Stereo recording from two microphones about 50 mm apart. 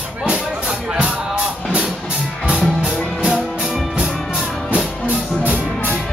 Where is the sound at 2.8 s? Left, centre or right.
Centre.